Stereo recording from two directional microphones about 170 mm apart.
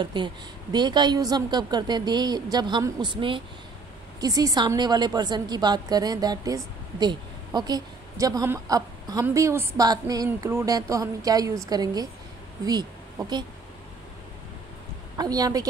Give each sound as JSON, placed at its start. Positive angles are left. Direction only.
{"t": 0.0, "sound": "a woman's voice", "side_deg": -25}
{"t": 15.1, "sound": "a woman's voice", "side_deg": -20}